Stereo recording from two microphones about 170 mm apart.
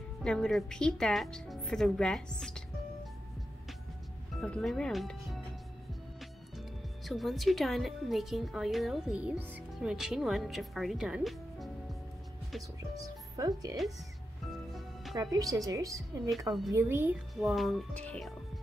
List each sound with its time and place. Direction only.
0.2 s speech: 5° left (ahead or behind)
4.4 s speech: 5° left (ahead or behind)
7.1 s speech: centre (ahead or behind)
13.4 s a woman's voice: 20° right (ahead or behind)
15.1 s a woman's voice: 20° right (ahead or behind)
16.3 s speech: centre (ahead or behind)
16.7 s a woman's voice: 15° right (ahead or behind)
17.4 s speech: centre (ahead or behind)